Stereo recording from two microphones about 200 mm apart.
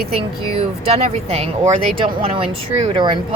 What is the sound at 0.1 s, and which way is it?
Speech, 30° right (ahead or behind).